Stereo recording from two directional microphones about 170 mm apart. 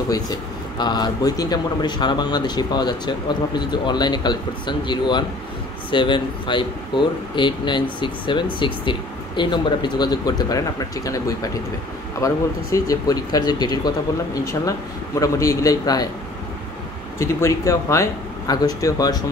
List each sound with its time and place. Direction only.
0.1 s speech: 25° left (ahead or behind)
17.2 s speech: 15° left (ahead or behind)